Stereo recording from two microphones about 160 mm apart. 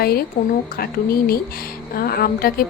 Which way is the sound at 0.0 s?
70° left (ahead or behind).